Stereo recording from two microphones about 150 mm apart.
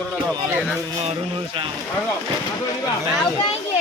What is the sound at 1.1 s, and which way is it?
Speech, 35° right (ahead or behind).